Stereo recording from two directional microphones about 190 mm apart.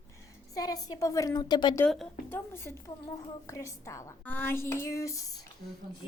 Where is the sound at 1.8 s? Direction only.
Centre (ahead or behind).